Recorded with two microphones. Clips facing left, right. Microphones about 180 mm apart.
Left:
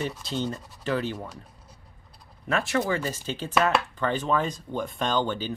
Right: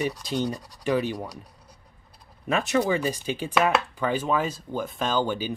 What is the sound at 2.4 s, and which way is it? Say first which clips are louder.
Speech: right 2 dB; 20° right (ahead or behind).